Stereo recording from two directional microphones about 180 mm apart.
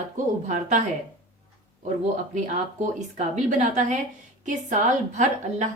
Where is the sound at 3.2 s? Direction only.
45° right (ahead or behind).